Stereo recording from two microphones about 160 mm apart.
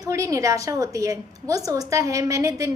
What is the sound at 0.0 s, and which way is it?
A woman's voice, 20° right (ahead or behind).